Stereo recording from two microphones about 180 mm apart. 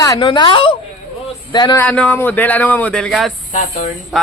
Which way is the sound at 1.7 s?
5° left (ahead or behind).